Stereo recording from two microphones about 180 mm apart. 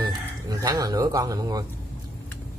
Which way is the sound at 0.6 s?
20° right (ahead or behind).